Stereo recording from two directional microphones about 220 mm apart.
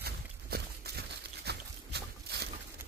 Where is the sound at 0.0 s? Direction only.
45° right (ahead or behind).